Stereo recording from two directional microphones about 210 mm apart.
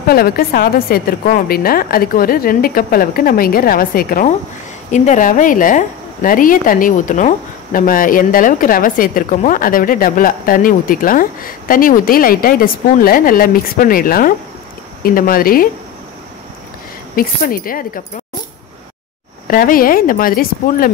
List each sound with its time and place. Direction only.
0.1 s a woman's voice: 45° left (ahead or behind)
17.1 s a woman's voice: 45° left (ahead or behind)
19.4 s a woman's voice: 45° left (ahead or behind)